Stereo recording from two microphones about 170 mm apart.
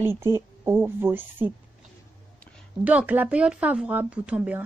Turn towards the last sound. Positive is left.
turn(degrees=-10)  # may be behind; listen again after turning